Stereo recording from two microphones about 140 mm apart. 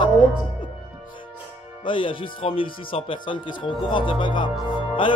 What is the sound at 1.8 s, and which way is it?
Speech, 35° left (ahead or behind).